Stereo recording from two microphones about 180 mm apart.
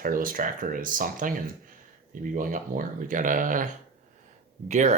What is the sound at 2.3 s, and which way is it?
Speech, 50° right (ahead or behind).